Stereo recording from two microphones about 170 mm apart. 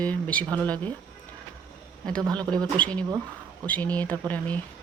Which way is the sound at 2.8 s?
5° left (ahead or behind).